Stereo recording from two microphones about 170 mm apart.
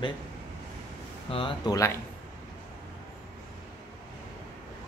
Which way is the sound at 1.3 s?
30° left (ahead or behind).